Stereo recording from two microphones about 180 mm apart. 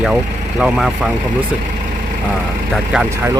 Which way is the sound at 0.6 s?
5° right (ahead or behind).